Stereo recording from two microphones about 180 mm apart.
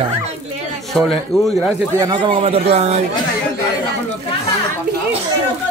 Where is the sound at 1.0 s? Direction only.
Centre (ahead or behind).